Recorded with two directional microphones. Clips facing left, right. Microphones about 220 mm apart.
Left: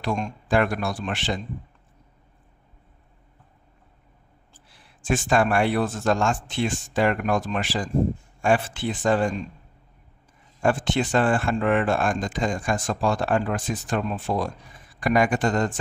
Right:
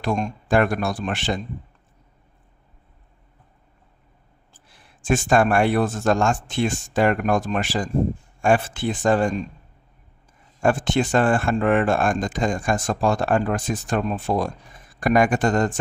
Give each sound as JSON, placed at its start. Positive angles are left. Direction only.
{"t": 0.0, "sound": "speech", "side_deg": -45}
{"t": 4.6, "sound": "speech", "side_deg": -45}
{"t": 10.6, "sound": "speech", "side_deg": -45}